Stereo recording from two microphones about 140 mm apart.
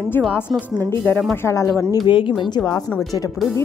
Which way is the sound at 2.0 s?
35° left (ahead or behind).